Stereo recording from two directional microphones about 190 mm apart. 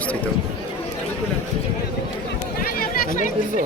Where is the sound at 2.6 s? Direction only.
50° left (ahead or behind).